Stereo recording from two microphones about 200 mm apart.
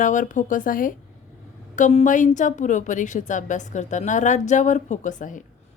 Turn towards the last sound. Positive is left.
turn(degrees=40)  # may be behind; listen again after turning